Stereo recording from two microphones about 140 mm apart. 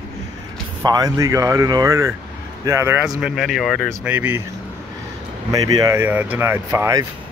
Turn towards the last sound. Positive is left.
turn(degrees=-20)  # may be behind; listen again after turning